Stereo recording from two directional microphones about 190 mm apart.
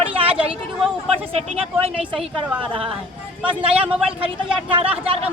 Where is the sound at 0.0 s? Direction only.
30° right (ahead or behind).